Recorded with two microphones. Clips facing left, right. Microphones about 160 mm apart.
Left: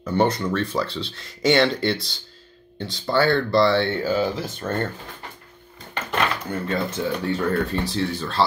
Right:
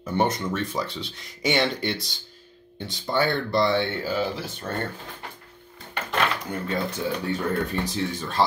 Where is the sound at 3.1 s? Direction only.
15° right (ahead or behind).